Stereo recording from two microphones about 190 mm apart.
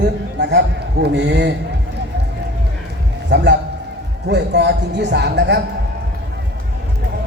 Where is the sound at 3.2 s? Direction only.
60° right (ahead or behind).